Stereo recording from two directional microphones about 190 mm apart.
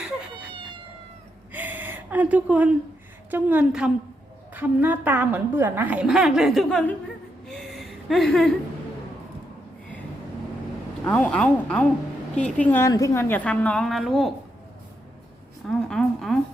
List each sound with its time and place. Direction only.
1.5 s gasp: 10° right (ahead or behind)
3.2 s a woman's voice: 10° right (ahead or behind)
7.4 s gasp: centre (ahead or behind)
11.0 s a woman's voice: 5° left (ahead or behind)
15.6 s a woman's voice: centre (ahead or behind)